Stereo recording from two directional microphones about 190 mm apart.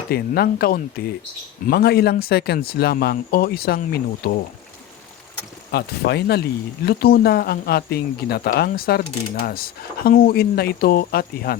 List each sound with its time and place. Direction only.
0.1 s speech: 55° left (ahead or behind)
5.7 s speech: 60° left (ahead or behind)